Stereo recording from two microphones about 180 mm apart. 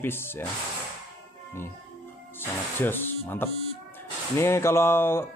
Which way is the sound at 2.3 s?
10° left (ahead or behind).